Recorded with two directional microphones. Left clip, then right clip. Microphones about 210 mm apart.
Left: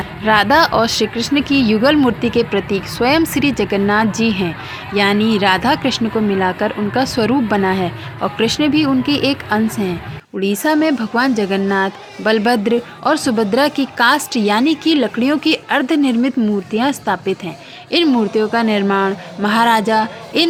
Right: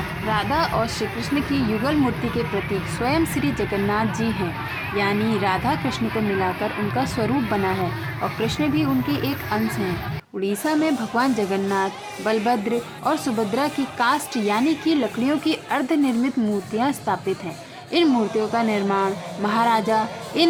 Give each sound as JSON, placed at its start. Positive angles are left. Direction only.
{"t": 0.3, "sound": "speech", "side_deg": 30}